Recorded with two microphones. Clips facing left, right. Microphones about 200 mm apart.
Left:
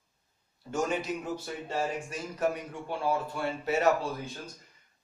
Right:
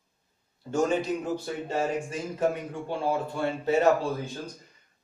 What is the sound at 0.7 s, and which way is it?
Speech, 30° right (ahead or behind).